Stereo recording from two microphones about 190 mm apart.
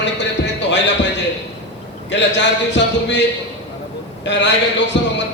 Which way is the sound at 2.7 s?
70° left (ahead or behind).